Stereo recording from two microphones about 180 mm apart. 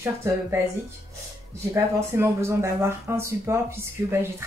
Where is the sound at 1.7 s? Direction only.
15° right (ahead or behind).